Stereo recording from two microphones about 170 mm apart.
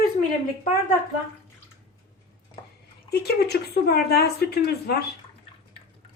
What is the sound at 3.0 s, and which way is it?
Speech, 70° left (ahead or behind).